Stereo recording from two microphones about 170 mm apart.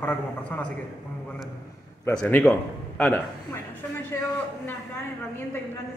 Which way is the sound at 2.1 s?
10° left (ahead or behind).